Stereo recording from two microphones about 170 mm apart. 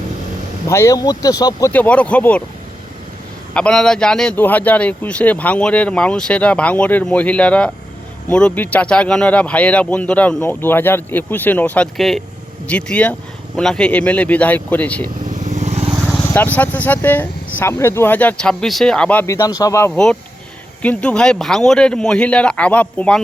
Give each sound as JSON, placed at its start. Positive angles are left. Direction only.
{"t": 0.7, "sound": "speech", "side_deg": 15}
{"t": 1.7, "sound": "a man's voice", "side_deg": 10}
{"t": 3.5, "sound": "a man's voice", "side_deg": 5}
{"t": 15.4, "sound": "vehicle", "side_deg": -40}
{"t": 16.2, "sound": "a man's voice", "side_deg": 10}
{"t": 19.9, "sound": "speech", "side_deg": 5}